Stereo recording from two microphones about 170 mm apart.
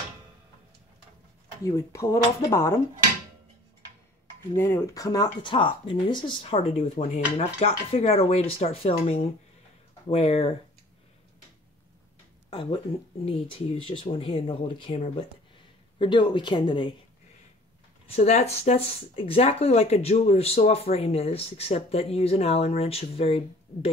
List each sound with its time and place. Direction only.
1.6 s speech: 15° left (ahead or behind)
4.6 s speech: 15° left (ahead or behind); by 9.1 s 35° left (ahead or behind)
10.1 s speech: 35° left (ahead or behind)
12.4 s speech: 30° left (ahead or behind)
16.0 s speech: 30° left (ahead or behind)
18.0 s speech: 40° left (ahead or behind)